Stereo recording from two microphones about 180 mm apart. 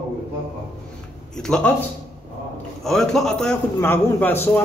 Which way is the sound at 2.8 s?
Centre (ahead or behind).